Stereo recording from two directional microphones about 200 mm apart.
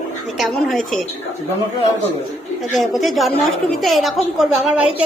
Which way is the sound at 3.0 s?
Centre (ahead or behind).